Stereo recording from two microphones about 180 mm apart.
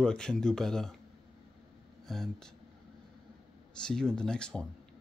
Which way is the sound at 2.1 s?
Centre (ahead or behind).